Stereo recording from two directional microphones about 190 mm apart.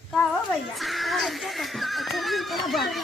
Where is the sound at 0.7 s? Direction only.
Centre (ahead or behind).